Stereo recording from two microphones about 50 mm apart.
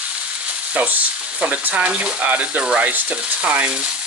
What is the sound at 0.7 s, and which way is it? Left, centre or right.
Frying, right.